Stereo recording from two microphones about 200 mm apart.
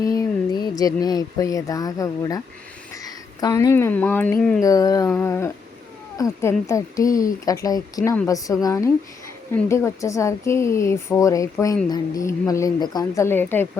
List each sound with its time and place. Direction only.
0.0 s speech: 15° left (ahead or behind)
4.6 s speech: 15° left (ahead or behind)